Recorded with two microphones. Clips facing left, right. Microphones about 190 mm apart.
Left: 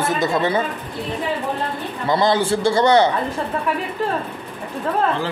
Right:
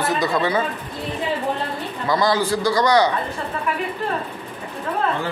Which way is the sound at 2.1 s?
25° left (ahead or behind).